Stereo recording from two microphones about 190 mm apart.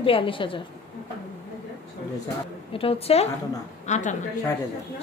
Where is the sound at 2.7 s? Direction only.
30° left (ahead or behind).